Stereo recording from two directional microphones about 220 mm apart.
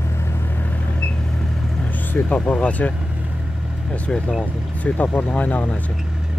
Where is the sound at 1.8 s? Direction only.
10° left (ahead or behind).